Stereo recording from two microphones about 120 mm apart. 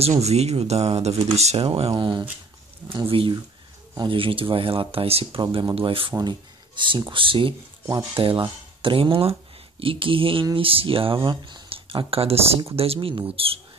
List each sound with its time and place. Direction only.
0.2 s speech: 65° right (ahead or behind)
1.7 s speech: 50° right (ahead or behind)
5.4 s speech: 40° right (ahead or behind)